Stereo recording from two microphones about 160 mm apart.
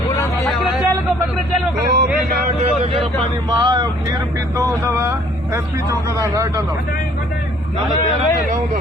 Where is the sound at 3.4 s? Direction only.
25° right (ahead or behind).